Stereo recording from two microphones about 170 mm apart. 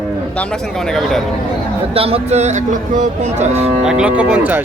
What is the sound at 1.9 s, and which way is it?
Cattle, 35° right (ahead or behind).